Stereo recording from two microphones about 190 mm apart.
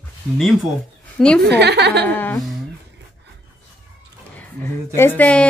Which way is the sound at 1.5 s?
60° right (ahead or behind).